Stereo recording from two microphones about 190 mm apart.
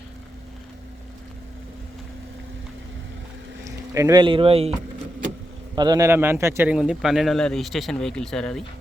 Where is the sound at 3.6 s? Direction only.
15° right (ahead or behind).